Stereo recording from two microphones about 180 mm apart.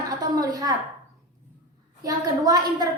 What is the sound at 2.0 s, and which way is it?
Speech, 20° right (ahead or behind).